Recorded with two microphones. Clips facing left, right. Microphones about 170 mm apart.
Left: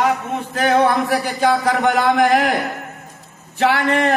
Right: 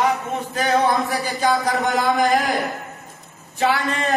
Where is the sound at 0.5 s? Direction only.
60° left (ahead or behind).